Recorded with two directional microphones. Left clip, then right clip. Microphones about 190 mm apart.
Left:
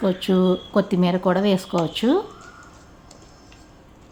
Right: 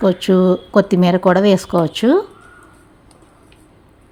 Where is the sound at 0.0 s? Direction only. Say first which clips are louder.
Right 7 dB; 35° right (ahead or behind).